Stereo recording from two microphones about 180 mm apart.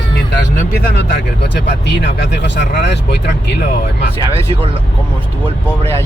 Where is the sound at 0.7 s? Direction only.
70° left (ahead or behind).